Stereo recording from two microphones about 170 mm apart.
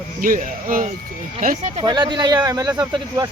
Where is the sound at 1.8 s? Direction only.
25° right (ahead or behind).